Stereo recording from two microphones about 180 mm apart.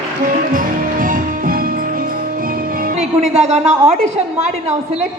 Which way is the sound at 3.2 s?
35° right (ahead or behind).